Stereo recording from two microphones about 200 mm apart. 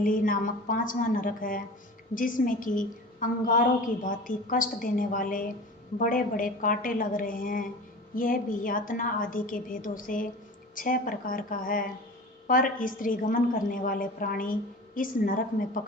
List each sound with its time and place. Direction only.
0.0 s a woman's voice: 45° left (ahead or behind)